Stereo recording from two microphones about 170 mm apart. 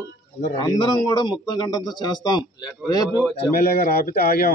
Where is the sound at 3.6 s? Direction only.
65° left (ahead or behind).